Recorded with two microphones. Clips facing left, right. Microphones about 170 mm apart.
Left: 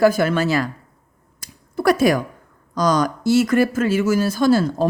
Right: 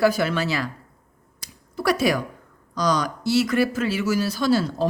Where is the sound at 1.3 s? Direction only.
50° left (ahead or behind).